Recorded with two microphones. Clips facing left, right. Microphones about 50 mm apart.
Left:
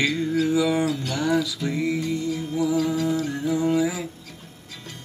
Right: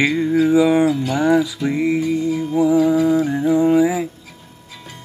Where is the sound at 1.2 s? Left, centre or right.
Right.